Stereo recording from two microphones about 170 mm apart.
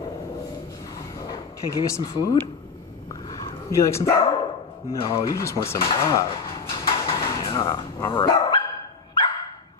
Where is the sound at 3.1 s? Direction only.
25° left (ahead or behind).